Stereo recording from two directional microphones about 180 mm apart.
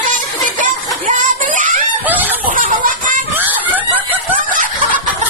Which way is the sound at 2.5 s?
50° right (ahead or behind).